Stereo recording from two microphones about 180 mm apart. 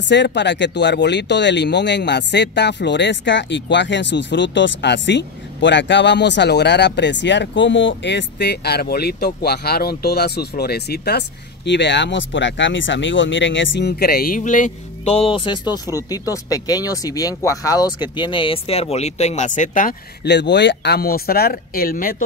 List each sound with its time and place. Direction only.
0.1 s speech: 75° left (ahead or behind); by 20.0 s 45° left (ahead or behind)
20.2 s speech: 75° left (ahead or behind); by 22.1 s 55° left (ahead or behind)